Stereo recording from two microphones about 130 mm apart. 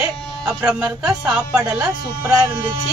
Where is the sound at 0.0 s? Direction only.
10° right (ahead or behind).